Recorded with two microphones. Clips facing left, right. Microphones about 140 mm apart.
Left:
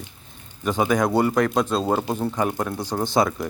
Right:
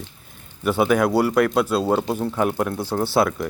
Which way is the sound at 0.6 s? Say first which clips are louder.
Right 2 dB; 10° right (ahead or behind).